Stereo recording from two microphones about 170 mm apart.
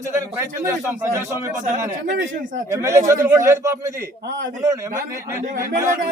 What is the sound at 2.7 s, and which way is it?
A man's voice, 15° right (ahead or behind).